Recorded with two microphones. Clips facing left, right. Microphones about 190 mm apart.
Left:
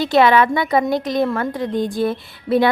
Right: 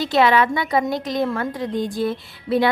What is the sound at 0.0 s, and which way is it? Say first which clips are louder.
A woman's voice: left 3 dB; 55° left (ahead or behind).